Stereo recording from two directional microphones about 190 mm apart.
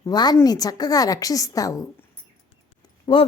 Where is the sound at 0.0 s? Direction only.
20° left (ahead or behind).